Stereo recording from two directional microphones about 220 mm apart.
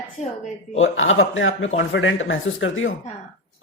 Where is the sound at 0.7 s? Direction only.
60° left (ahead or behind).